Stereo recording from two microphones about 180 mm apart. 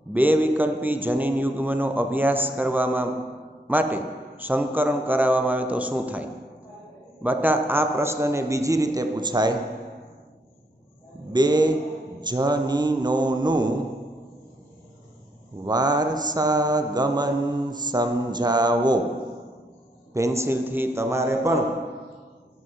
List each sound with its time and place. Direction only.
0.1 s speech: 10° right (ahead or behind)
7.2 s speech: 10° right (ahead or behind)
11.3 s mantra: 25° right (ahead or behind)
15.6 s mantra: 20° right (ahead or behind)
20.1 s speech: 15° right (ahead or behind)